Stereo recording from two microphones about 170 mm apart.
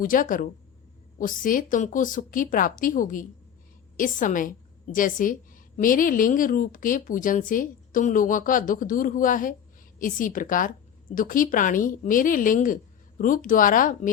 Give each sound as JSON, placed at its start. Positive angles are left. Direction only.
{"t": 0.0, "sound": "a woman's voice", "side_deg": 50}